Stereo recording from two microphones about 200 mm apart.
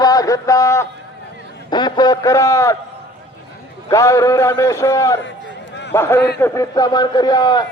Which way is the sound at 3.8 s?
15° left (ahead or behind).